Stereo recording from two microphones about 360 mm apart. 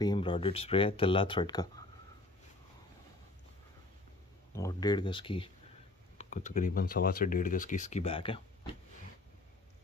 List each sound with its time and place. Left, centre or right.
0.0 s speech: centre
4.5 s speech: centre